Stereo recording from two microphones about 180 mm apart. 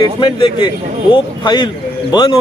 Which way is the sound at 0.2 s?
30° left (ahead or behind).